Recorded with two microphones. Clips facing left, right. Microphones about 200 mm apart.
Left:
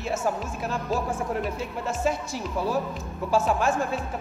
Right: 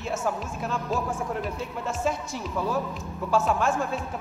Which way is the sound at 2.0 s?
5° left (ahead or behind).